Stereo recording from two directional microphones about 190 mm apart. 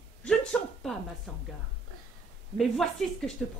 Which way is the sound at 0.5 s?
Centre (ahead or behind).